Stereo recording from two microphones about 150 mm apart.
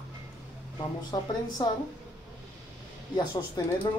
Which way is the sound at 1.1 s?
25° left (ahead or behind).